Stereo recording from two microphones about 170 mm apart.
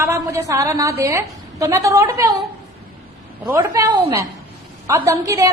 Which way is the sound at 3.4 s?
15° right (ahead or behind).